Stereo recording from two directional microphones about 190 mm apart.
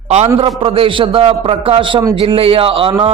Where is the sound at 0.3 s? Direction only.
30° right (ahead or behind).